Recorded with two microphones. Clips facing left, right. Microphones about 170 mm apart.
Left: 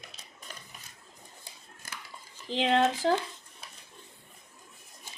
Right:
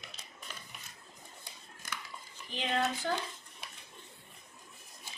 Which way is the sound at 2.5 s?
90° left.